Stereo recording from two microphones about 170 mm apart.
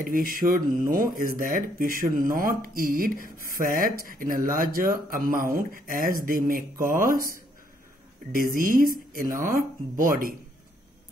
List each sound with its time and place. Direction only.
0.0 s speech: 55° right (ahead or behind)
8.3 s speech: 55° right (ahead or behind)